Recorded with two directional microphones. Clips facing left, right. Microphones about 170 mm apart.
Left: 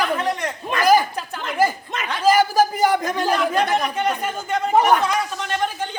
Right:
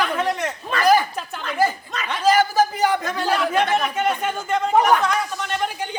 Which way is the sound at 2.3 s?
10° left (ahead or behind).